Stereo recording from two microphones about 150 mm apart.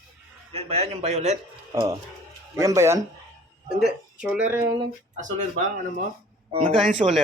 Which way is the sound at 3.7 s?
5° right (ahead or behind).